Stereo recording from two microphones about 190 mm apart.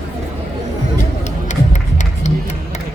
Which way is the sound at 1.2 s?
40° left (ahead or behind).